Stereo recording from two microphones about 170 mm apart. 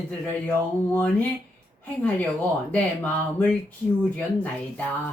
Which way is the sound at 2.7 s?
10° left (ahead or behind).